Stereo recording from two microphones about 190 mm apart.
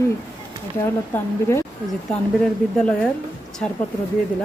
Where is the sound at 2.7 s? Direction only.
5° left (ahead or behind).